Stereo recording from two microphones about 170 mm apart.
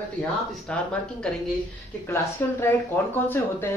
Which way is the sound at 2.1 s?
15° left (ahead or behind).